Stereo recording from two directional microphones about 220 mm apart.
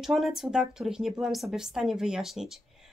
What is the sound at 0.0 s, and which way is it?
Speech, centre (ahead or behind).